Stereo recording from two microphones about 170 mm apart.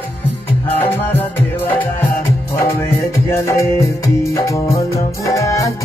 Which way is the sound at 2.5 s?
15° left (ahead or behind).